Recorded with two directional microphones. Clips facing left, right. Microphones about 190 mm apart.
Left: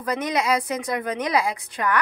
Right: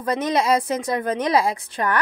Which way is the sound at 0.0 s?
25° right (ahead or behind).